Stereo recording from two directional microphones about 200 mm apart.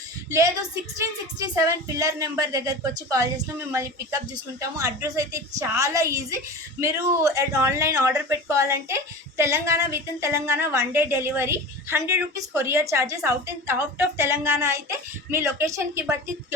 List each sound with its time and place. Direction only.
0.3 s a woman's voice: 15° right (ahead or behind)
2.0 s a woman's voice: 15° right (ahead or behind)